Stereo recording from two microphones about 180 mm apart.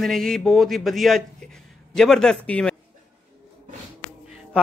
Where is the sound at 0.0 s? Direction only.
Centre (ahead or behind).